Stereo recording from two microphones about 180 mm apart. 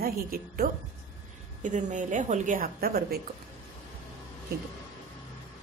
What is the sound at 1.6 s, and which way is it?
A woman's voice, 45° right (ahead or behind).